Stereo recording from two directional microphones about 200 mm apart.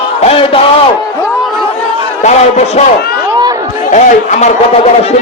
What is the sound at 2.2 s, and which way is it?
Speech, 35° left (ahead or behind).